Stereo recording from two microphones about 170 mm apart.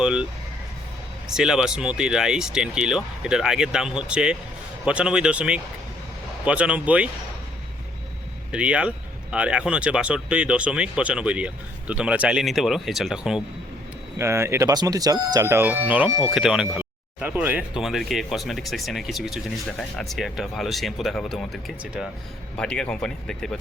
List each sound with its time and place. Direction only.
0.0 s speech: 5° right (ahead or behind)
1.3 s speech: 5° right (ahead or behind)
8.5 s speech: 5° right (ahead or behind)
14.2 s speech: 15° right (ahead or behind); by 23.6 s 5° left (ahead or behind)